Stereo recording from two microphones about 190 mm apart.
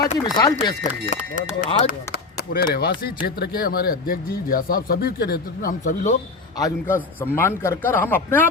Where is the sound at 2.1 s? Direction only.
55° left (ahead or behind).